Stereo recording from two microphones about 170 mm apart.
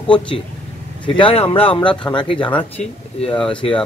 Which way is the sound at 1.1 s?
35° left (ahead or behind).